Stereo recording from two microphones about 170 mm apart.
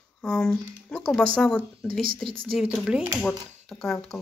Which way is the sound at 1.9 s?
60° right (ahead or behind).